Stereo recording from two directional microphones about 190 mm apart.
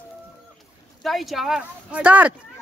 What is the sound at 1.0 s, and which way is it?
Speech, centre (ahead or behind).